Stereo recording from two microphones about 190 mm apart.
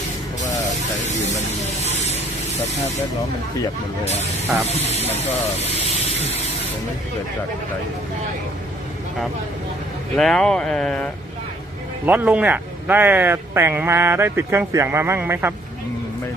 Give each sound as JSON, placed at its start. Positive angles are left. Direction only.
{"t": 4.0, "sound": "speech", "side_deg": 35}
{"t": 10.1, "sound": "speech", "side_deg": 5}
{"t": 12.1, "sound": "speech", "side_deg": -10}